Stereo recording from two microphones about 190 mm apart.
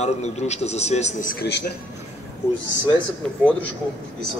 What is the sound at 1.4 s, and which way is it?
Speech, 60° left (ahead or behind).